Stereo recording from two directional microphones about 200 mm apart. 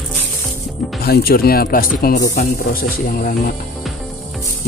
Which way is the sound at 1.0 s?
50° left (ahead or behind).